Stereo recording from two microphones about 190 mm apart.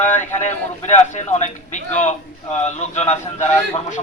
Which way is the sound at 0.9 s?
40° left (ahead or behind).